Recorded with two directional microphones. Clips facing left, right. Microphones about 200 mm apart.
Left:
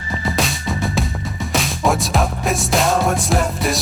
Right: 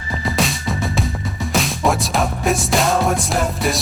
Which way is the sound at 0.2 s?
Centre (ahead or behind).